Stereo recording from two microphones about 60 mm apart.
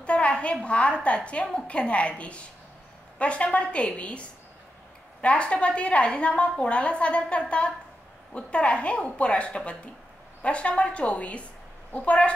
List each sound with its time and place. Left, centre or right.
0.0 s a woman's voice: centre